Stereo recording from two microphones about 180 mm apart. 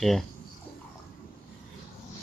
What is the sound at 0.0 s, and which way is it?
Speech, centre (ahead or behind).